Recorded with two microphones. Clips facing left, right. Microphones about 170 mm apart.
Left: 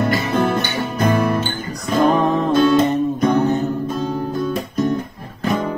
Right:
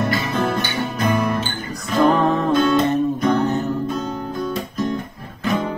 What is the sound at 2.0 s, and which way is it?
Music, 15° left (ahead or behind).